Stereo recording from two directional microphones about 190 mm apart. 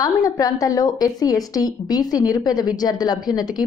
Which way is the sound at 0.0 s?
20° left (ahead or behind).